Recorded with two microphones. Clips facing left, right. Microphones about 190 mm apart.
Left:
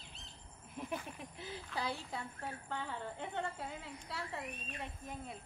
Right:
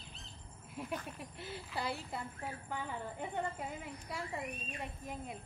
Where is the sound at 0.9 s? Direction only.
Centre (ahead or behind).